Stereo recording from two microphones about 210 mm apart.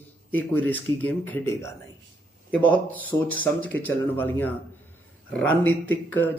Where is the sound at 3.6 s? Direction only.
10° left (ahead or behind).